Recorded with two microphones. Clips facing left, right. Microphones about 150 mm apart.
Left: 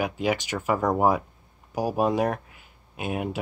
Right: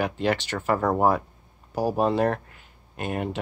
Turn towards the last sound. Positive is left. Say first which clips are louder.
# even
turn(degrees=5)  # may be behind; listen again after turning